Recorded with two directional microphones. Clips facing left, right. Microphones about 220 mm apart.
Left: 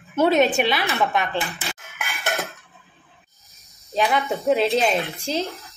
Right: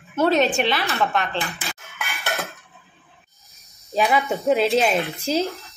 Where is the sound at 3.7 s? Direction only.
Centre (ahead or behind).